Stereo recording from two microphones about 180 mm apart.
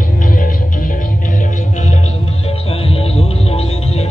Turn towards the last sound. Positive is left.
turn(degrees=35)  # may be behind; listen again after turning